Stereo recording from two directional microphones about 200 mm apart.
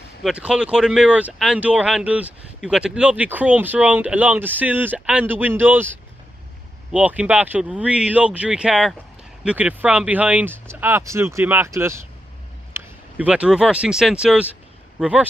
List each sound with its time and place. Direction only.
0.2 s speech: 5° right (ahead or behind)